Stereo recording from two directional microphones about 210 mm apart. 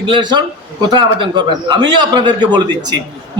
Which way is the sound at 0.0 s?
20° right (ahead or behind).